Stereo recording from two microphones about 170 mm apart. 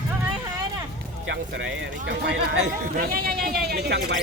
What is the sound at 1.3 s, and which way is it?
Speech, 90° right.